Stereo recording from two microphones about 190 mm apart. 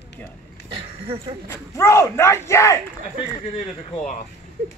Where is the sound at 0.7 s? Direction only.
30° right (ahead or behind).